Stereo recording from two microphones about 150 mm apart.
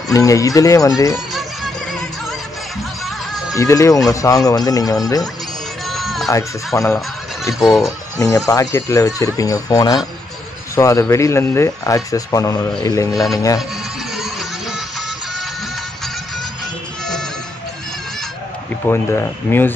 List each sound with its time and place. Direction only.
0.1 s speech: 20° left (ahead or behind)
1.1 s music: centre (ahead or behind)
3.5 s speech: 20° left (ahead or behind)
5.9 s music: centre (ahead or behind)
6.7 s speech: 15° left (ahead or behind)
7.4 s speech: centre (ahead or behind)
7.8 s speech: 20° left (ahead or behind)
13.1 s speech: centre (ahead or behind)
14.1 s music: centre (ahead or behind)
18.9 s speech: 15° left (ahead or behind)